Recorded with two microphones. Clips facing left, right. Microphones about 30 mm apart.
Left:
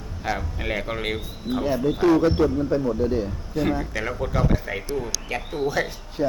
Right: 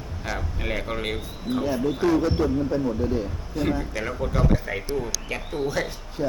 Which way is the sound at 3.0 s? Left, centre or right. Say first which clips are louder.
Left 2 dB; left.